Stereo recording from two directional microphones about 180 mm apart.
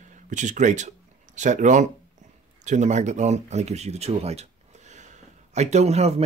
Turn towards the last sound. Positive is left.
turn(degrees=-35)  # may be behind; listen again after turning